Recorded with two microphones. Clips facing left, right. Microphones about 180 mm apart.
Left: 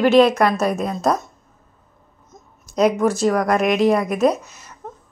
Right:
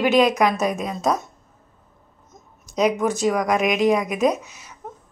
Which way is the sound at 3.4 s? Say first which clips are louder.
Left 2 dB; 5° left (ahead or behind).